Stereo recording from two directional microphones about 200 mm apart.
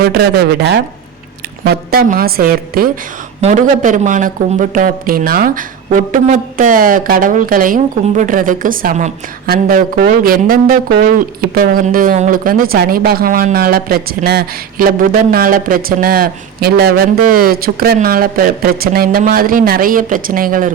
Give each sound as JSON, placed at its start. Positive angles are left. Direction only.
{"t": 0.0, "sound": "speech", "side_deg": -50}